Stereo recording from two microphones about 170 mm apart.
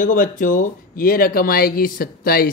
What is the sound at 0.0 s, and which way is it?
Speech, 50° left (ahead or behind).